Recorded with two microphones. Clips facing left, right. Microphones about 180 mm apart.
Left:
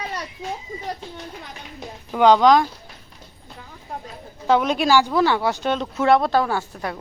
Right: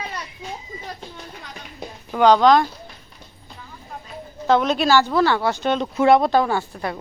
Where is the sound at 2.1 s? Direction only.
20° left (ahead or behind).